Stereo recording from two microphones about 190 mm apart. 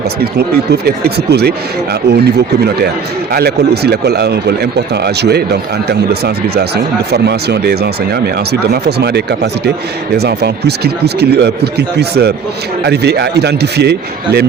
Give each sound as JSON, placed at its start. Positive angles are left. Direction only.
{"t": 0.2, "sound": "speech", "side_deg": -55}